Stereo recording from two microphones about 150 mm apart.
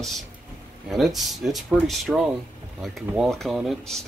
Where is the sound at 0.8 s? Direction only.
Centre (ahead or behind).